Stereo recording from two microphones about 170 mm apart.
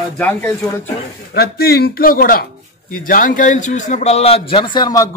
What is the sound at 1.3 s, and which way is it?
A man's voice, 65° left (ahead or behind).